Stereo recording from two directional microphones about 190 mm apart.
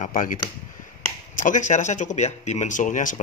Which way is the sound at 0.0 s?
45° left (ahead or behind).